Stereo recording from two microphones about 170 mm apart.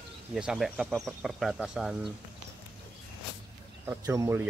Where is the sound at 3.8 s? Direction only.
20° right (ahead or behind).